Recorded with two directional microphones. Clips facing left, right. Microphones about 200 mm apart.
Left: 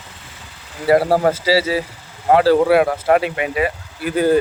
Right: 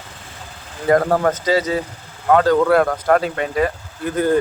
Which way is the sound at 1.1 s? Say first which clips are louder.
Left 2 dB; 30° left (ahead or behind).